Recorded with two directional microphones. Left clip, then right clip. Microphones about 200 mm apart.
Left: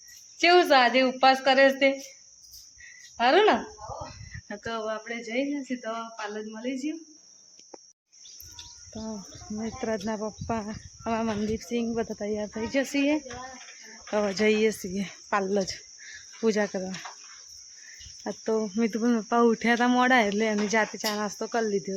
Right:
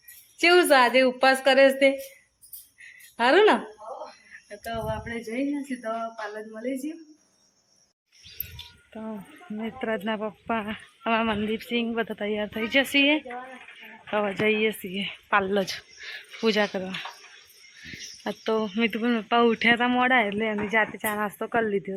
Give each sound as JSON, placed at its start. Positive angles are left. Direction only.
{"t": 0.3, "sound": "speech", "side_deg": -5}
{"t": 3.2, "sound": "speech", "side_deg": -5}
{"t": 4.4, "sound": "speech", "side_deg": 35}
{"t": 4.7, "sound": "speech", "side_deg": 15}
{"t": 8.9, "sound": "cricket", "side_deg": 5}
{"t": 9.6, "sound": "speech", "side_deg": 5}
{"t": 15.5, "sound": "speech", "side_deg": 10}
{"t": 18.2, "sound": "speech", "side_deg": 10}